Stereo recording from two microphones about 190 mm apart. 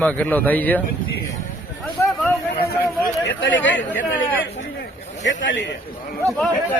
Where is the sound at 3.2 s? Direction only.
75° left (ahead or behind).